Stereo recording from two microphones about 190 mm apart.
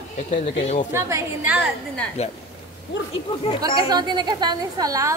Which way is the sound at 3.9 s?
20° right (ahead or behind).